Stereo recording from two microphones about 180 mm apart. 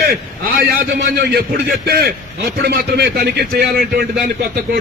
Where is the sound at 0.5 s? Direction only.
60° right (ahead or behind).